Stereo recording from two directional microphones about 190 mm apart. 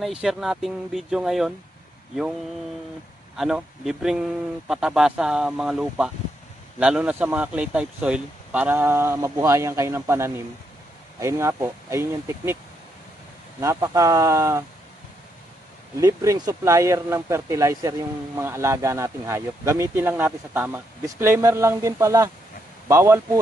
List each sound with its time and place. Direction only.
0.0 s speech: centre (ahead or behind)
3.3 s speech: centre (ahead or behind)
13.6 s speech: 15° right (ahead or behind)
16.0 s speech: 15° right (ahead or behind)